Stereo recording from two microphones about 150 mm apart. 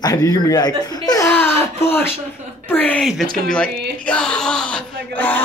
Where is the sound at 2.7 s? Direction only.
10° left (ahead or behind).